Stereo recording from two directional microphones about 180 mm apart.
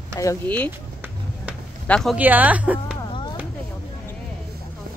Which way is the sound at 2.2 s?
10° right (ahead or behind).